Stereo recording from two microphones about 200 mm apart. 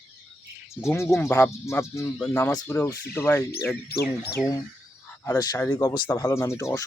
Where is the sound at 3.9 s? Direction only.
50° left (ahead or behind).